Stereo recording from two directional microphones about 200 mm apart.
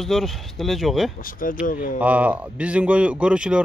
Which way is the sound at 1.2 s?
45° left (ahead or behind).